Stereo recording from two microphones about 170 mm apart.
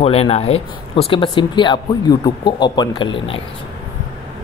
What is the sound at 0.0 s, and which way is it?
Speech, 35° left (ahead or behind).